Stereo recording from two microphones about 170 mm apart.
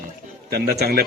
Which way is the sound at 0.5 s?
65° right (ahead or behind).